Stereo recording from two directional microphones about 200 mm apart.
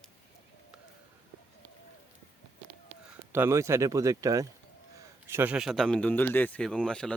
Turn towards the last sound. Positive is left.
turn(degrees=5)  # may be behind; listen again after turning